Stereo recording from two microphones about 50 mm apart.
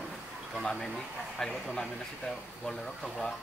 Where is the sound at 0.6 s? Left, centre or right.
Centre.